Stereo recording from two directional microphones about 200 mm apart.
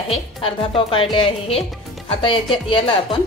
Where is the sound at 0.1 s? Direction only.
25° left (ahead or behind).